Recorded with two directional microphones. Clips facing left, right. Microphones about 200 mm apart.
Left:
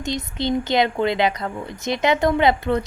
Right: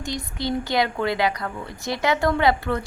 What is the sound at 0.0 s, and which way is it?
Speech, 20° left (ahead or behind).